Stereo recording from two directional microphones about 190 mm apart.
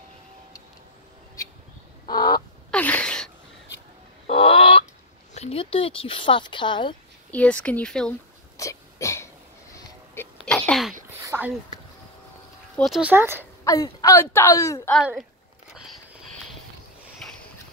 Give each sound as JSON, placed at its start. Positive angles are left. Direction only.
{"t": 2.0, "sound": "fowl", "side_deg": 20}
{"t": 2.7, "sound": "a sound", "side_deg": 5}
{"t": 4.3, "sound": "chicken", "side_deg": 30}
{"t": 5.3, "sound": "speech", "side_deg": 35}
{"t": 7.2, "sound": "speech", "side_deg": 5}
{"t": 8.5, "sound": "throat clearing", "side_deg": 15}
{"t": 10.4, "sound": "sneeze", "side_deg": 5}
{"t": 11.1, "sound": "a sound", "side_deg": -15}
{"t": 12.7, "sound": "speech", "side_deg": 0}
{"t": 13.1, "sound": "a woman's voice", "side_deg": -10}
{"t": 13.7, "sound": "speech", "side_deg": 20}
{"t": 15.7, "sound": "sniff", "side_deg": 0}
{"t": 17.2, "sound": "a sound", "side_deg": 5}